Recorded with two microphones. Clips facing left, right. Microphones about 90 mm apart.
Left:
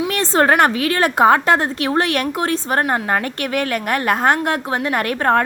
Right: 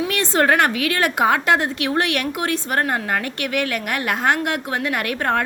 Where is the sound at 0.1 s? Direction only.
35° left (ahead or behind).